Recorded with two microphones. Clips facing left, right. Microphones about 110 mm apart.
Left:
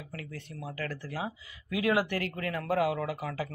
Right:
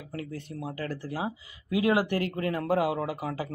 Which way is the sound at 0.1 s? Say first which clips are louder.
Right 8 dB; 30° right (ahead or behind).